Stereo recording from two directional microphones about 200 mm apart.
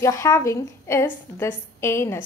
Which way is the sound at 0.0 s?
15° left (ahead or behind).